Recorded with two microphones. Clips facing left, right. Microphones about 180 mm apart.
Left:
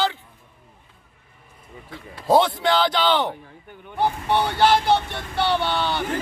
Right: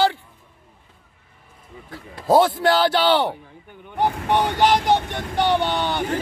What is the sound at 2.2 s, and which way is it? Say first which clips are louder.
Crowd: right 2 dB; centre (ahead or behind).